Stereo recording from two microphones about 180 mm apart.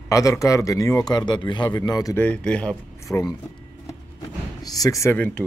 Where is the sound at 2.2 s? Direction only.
5° left (ahead or behind).